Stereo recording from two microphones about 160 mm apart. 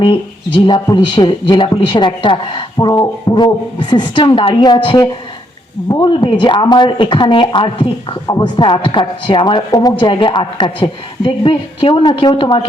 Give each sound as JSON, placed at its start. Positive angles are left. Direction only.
{"t": 0.0, "sound": "a woman's voice", "side_deg": 30}